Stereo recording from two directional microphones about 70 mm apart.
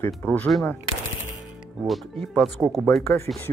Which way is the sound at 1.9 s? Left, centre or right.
Centre.